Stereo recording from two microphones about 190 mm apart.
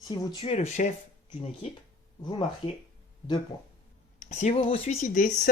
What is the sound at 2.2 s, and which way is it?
Speech, 25° left (ahead or behind).